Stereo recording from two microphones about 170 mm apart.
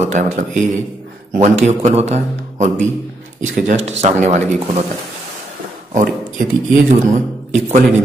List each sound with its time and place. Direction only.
0.0 s speech: 45° right (ahead or behind)
1.3 s a man's voice: 40° right (ahead or behind)
5.9 s speech: 50° right (ahead or behind)